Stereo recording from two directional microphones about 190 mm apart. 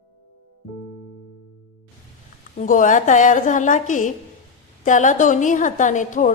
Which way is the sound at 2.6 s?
45° left (ahead or behind).